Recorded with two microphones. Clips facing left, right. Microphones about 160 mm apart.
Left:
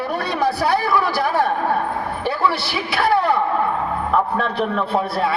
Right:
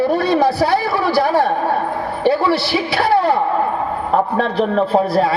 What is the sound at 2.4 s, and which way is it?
A man's voice, 30° right (ahead or behind).